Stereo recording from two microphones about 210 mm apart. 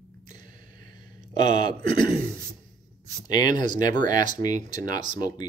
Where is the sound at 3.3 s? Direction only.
20° left (ahead or behind).